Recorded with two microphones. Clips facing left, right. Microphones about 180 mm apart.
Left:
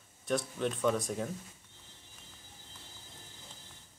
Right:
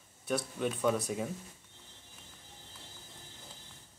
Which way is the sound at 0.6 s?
5° right (ahead or behind).